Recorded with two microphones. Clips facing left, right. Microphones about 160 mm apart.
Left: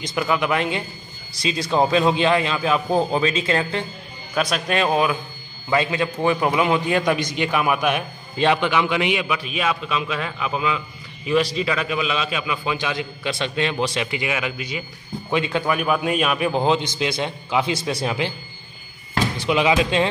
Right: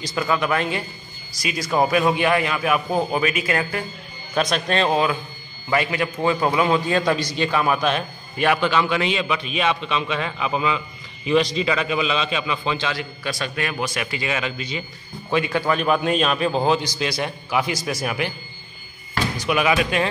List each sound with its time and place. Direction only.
0.0 s a man's voice: 15° left (ahead or behind)
4.4 s a man's voice: 10° left (ahead or behind); by 14.2 s 25° left (ahead or behind)
14.2 s a man's voice: 10° left (ahead or behind)
15.7 s a man's voice: 10° left (ahead or behind); by 18.3 s 25° left (ahead or behind)
19.3 s a man's voice: 25° left (ahead or behind)